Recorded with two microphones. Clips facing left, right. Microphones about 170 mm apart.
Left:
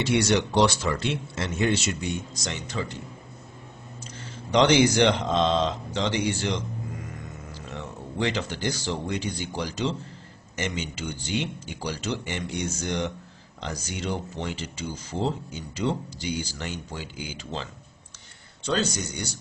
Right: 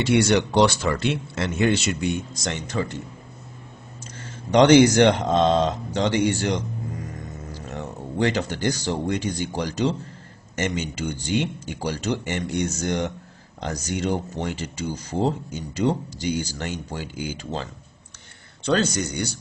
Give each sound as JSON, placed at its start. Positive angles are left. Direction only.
{"t": 0.0, "sound": "speech", "side_deg": -55}
{"t": 4.5, "sound": "speech", "side_deg": -45}
{"t": 18.7, "sound": "speech", "side_deg": -55}